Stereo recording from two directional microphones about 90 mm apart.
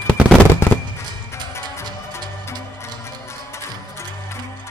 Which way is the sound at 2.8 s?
30° left (ahead or behind).